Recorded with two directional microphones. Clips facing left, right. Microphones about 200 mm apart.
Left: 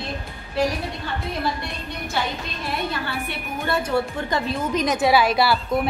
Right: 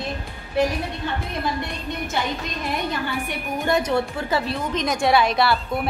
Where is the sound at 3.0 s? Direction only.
15° right (ahead or behind).